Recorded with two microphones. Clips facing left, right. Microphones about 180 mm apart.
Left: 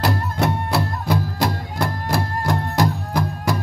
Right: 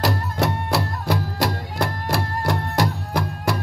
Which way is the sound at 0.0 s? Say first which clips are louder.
Left 1 dB; 55° left (ahead or behind).